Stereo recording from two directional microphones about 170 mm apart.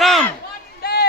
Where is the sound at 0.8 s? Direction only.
70° left (ahead or behind).